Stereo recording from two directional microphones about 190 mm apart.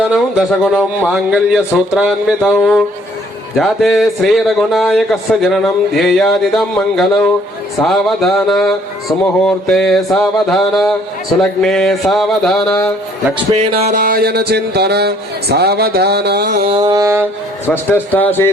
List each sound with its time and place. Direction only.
0.1 s speech: centre (ahead or behind)
13.5 s music: 35° right (ahead or behind); by 16.7 s 55° right (ahead or behind)
16.7 s music: 20° right (ahead or behind)
17.7 s a man's voice: 10° left (ahead or behind)